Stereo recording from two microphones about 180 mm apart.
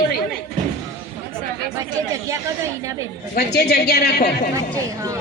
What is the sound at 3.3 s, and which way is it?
Speech, 65° left (ahead or behind).